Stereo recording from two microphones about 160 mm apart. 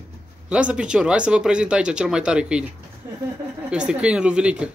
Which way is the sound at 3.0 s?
15° right (ahead or behind).